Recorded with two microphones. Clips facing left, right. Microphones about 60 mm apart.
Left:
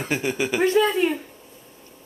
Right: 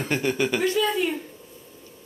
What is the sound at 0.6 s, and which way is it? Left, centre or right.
Speech, left.